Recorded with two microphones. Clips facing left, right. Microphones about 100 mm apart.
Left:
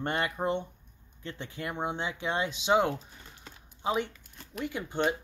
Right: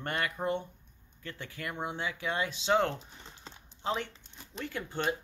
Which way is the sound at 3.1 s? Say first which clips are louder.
Right 1 dB; 20° right (ahead or behind).